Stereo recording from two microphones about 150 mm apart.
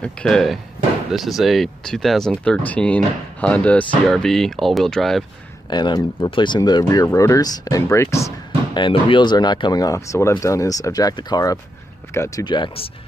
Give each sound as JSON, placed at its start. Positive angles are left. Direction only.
{"t": 0.0, "sound": "speech", "side_deg": 5}
{"t": 5.7, "sound": "speech", "side_deg": 30}
{"t": 8.7, "sound": "speech", "side_deg": 30}
{"t": 12.4, "sound": "speech", "side_deg": 30}